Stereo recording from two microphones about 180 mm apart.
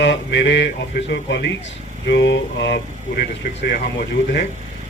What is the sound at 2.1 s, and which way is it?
Mantra, 80° left.